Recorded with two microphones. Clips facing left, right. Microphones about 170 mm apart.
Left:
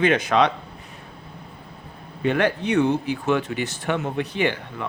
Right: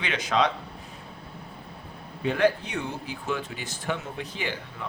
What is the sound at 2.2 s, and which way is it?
Speech, 65° left (ahead or behind).